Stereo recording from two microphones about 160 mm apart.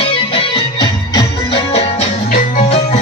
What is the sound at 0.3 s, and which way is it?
Music, 30° left (ahead or behind).